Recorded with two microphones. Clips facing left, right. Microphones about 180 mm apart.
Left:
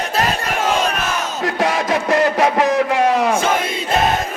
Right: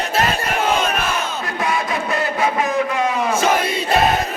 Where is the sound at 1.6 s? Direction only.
85° left.